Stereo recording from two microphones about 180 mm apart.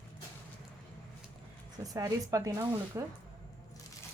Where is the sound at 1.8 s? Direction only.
20° right (ahead or behind).